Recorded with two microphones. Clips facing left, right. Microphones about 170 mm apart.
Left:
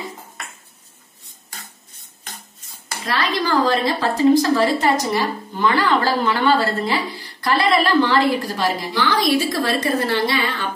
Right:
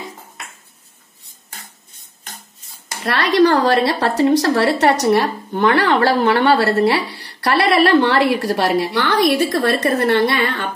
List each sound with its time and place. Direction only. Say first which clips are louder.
3.1 s a woman's voice: right 7 dB; 65° right (ahead or behind)